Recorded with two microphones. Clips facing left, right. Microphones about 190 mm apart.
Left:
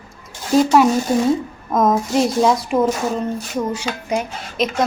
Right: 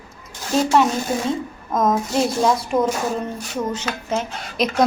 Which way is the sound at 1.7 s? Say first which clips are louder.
Left 3 dB; 50° left (ahead or behind).